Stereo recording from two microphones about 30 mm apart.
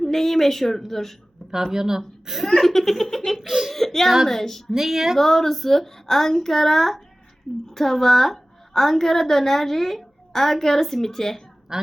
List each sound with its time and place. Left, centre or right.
0.0 s a woman's voice: centre
1.7 s speech: centre
2.6 s a woman's voice: centre
3.4 s speech: centre
3.7 s a woman's voice: centre
4.7 s speech: centre
5.1 s a woman's voice: centre
11.7 s a woman's voice: right